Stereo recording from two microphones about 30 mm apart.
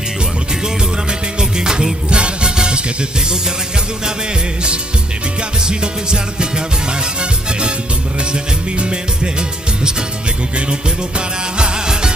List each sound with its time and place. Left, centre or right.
1.4 s music: right
5.6 s music: right